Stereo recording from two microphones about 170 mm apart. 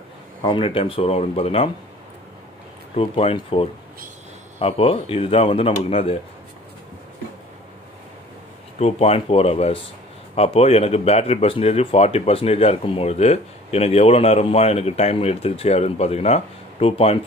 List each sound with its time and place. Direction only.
0.4 s speech: 30° left (ahead or behind)
3.0 s speech: 35° left (ahead or behind)
8.7 s speech: 40° left (ahead or behind)